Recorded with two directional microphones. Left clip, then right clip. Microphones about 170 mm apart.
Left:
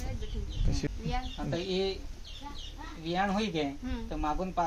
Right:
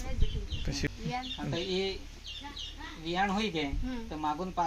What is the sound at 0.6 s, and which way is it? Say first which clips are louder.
Speech: right 1 dB; centre (ahead or behind).